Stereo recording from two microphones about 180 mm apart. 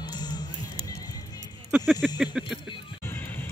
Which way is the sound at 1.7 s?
5° left (ahead or behind).